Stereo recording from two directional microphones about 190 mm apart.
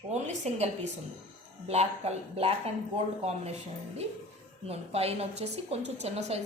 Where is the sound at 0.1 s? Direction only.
35° right (ahead or behind).